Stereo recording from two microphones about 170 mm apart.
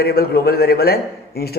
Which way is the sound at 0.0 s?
65° left (ahead or behind).